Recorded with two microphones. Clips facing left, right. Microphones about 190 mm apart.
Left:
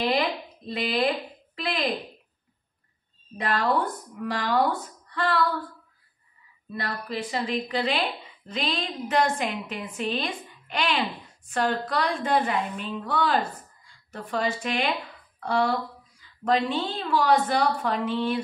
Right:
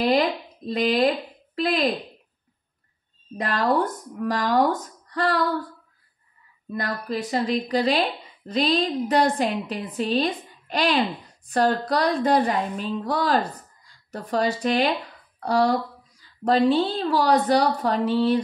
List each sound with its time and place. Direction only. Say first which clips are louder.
0.0 s speech: right 4 dB; 40° right (ahead or behind)
3.3 s a woman's voice: right 3 dB; 40° right (ahead or behind)
6.7 s a woman's voice: right 4 dB; 45° right (ahead or behind)